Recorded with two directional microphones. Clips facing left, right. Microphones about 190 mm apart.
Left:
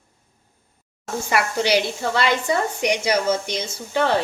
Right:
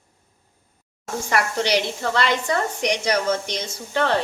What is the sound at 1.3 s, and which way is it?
Speech, 5° left (ahead or behind).